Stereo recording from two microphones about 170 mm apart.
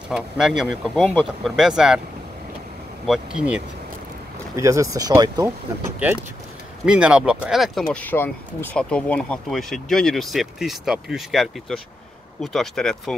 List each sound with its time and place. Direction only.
0.1 s speech: 5° right (ahead or behind)
3.1 s speech: 5° right (ahead or behind)
4.6 s speech: 20° right (ahead or behind); by 13.1 s centre (ahead or behind)